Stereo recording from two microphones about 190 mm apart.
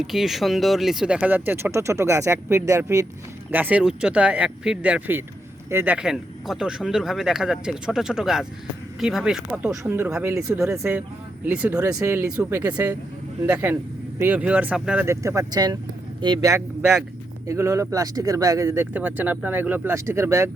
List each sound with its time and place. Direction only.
0.0 s speech: centre (ahead or behind)